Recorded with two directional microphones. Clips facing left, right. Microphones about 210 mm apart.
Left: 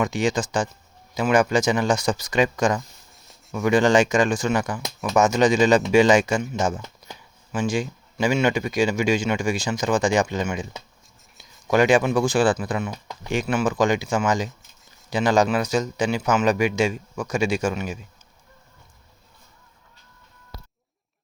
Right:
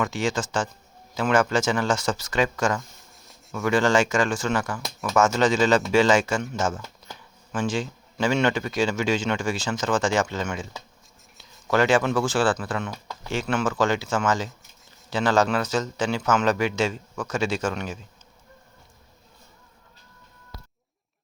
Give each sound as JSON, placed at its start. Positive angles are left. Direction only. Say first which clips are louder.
{"t": 0.0, "sound": "speech", "louder": "left 3 dB", "side_deg": 15}